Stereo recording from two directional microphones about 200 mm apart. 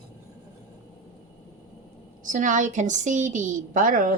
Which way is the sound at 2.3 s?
40° right (ahead or behind).